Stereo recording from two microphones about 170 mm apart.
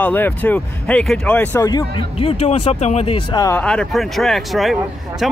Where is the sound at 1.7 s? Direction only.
25° left (ahead or behind).